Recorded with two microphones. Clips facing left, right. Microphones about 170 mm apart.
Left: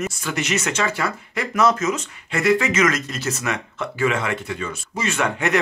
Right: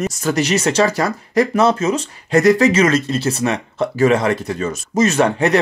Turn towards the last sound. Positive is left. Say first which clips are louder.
# right 7 dB
turn(degrees=-35)  # may be behind; listen again after turning